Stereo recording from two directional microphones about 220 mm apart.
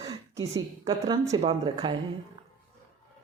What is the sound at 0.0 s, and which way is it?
A woman's voice, 15° right (ahead or behind).